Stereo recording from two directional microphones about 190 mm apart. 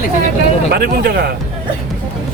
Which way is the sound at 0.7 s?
55° right (ahead or behind).